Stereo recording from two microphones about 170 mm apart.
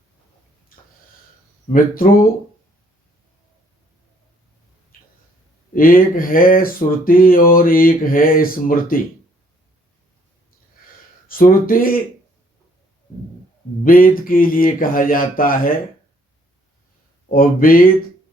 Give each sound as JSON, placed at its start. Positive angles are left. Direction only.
{"t": 1.7, "sound": "speech", "side_deg": 55}
{"t": 5.7, "sound": "speech", "side_deg": 55}
{"t": 11.3, "sound": "speech", "side_deg": 55}
{"t": 13.8, "sound": "speech", "side_deg": 55}
{"t": 17.2, "sound": "speech", "side_deg": 55}